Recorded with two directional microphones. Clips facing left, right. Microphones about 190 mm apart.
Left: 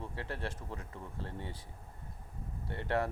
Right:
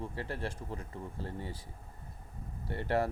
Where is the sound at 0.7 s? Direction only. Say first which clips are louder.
Right 3 dB; 35° right (ahead or behind).